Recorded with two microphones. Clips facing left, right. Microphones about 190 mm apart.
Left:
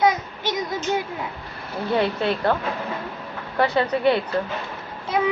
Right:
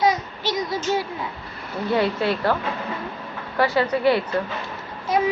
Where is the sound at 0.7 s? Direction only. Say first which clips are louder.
Right 1 dB; 15° left (ahead or behind).